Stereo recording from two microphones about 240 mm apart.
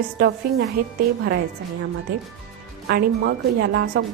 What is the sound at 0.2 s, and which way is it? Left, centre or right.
Speech, right.